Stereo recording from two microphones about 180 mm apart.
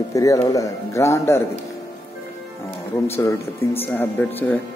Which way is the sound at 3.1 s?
15° left (ahead or behind).